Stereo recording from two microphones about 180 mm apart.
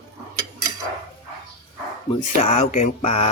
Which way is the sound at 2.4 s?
40° left (ahead or behind).